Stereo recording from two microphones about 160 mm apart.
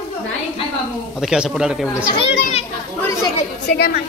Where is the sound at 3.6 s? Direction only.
90° left.